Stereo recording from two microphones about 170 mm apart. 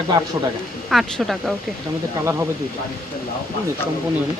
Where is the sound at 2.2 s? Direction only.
15° right (ahead or behind).